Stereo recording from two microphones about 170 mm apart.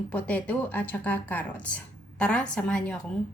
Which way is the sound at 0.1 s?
10° left (ahead or behind).